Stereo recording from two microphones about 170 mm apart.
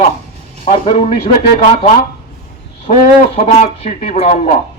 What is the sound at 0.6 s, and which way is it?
Speech, 35° left (ahead or behind).